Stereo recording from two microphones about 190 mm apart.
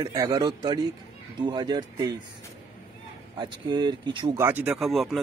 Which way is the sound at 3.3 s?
25° right (ahead or behind).